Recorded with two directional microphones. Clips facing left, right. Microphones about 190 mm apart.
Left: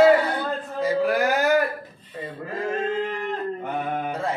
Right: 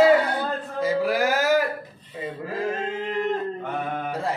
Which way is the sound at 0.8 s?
Centre (ahead or behind).